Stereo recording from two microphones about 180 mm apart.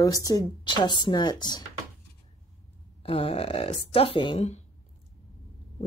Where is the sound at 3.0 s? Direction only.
30° left (ahead or behind).